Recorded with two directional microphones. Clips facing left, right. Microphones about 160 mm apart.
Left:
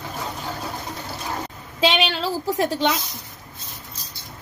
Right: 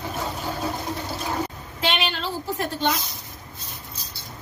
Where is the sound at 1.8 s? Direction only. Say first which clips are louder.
Left 5 dB; 90° left.